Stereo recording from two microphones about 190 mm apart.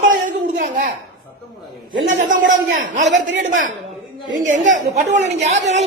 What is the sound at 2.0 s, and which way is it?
Speech, 40° right (ahead or behind).